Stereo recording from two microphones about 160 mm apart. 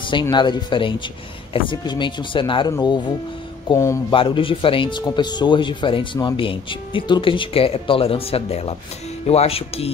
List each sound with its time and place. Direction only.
0.0 s speech: 30° left (ahead or behind)
4.1 s speech: 35° left (ahead or behind)